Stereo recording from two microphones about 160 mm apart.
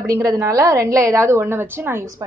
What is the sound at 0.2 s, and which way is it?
A woman's voice, 20° right (ahead or behind).